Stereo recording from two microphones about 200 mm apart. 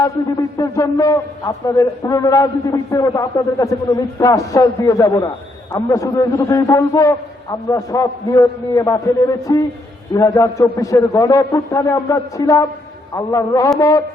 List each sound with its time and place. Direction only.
0.0 s a man's voice: 20° left (ahead or behind)